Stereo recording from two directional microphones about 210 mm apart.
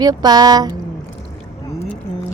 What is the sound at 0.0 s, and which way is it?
Speech, 20° right (ahead or behind).